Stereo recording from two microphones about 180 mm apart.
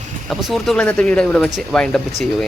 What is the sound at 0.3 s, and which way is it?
Speech, centre (ahead or behind).